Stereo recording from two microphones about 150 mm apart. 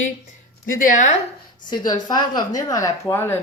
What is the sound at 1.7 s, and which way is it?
Speech, 25° left (ahead or behind).